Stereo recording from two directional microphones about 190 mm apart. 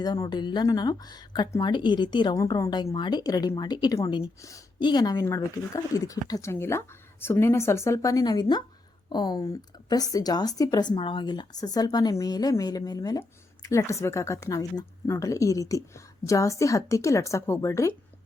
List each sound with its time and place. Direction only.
0.0 s a woman's voice: 20° left (ahead or behind)